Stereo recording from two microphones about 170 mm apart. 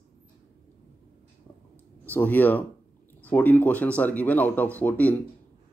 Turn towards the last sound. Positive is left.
turn(degrees=10)  # may be behind; listen again after turning